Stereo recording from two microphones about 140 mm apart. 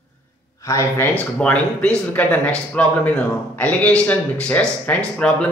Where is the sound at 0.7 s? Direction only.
20° left (ahead or behind).